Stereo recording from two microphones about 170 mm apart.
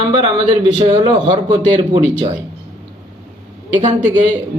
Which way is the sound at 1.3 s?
25° right (ahead or behind).